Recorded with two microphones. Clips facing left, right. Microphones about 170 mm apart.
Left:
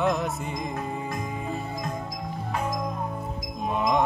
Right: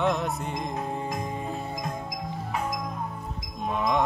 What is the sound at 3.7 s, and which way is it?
Music, 5° left (ahead or behind).